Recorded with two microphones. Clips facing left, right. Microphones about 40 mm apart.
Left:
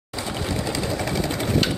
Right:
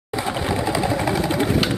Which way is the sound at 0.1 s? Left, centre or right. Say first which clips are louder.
Right 5 dB; right.